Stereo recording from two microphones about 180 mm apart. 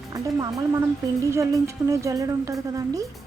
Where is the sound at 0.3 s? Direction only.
20° right (ahead or behind).